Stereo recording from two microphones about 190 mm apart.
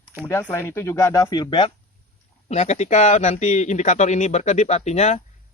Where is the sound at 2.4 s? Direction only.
35° left (ahead or behind).